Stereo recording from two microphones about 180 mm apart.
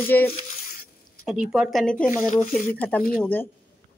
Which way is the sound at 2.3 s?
40° left (ahead or behind).